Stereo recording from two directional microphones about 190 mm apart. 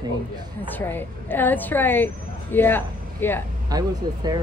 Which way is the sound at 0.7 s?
10° left (ahead or behind).